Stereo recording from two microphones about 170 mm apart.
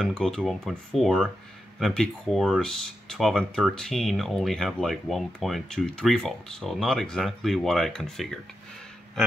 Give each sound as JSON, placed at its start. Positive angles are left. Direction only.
{"t": 0.0, "sound": "speech", "side_deg": 5}